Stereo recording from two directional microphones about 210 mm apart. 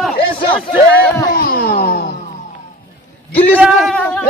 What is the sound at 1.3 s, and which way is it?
Music, 45° left (ahead or behind).